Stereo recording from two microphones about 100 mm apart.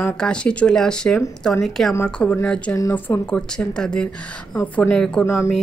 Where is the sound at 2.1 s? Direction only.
15° left (ahead or behind).